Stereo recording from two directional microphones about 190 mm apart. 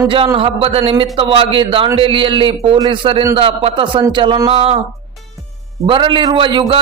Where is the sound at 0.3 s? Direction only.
30° right (ahead or behind).